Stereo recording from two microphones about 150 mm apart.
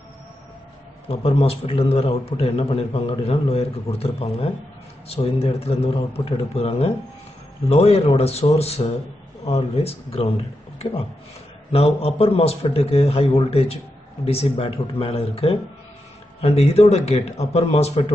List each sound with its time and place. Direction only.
1.0 s a man's voice: 40° left (ahead or behind)